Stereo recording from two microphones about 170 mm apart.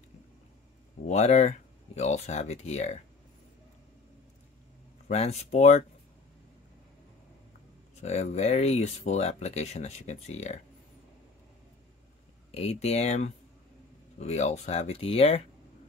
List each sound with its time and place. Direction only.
1.0 s speech: 40° left (ahead or behind)
5.0 s speech: 40° left (ahead or behind)
8.0 s speech: 40° left (ahead or behind)
12.4 s speech: 40° left (ahead or behind)